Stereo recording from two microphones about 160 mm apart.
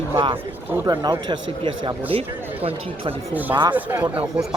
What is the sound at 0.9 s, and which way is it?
Speech, 25° right (ahead or behind).